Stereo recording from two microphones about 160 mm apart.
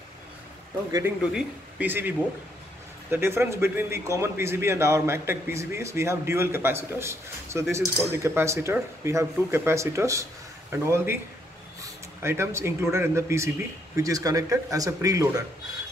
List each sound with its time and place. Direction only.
1.3 s a man's voice: 10° right (ahead or behind)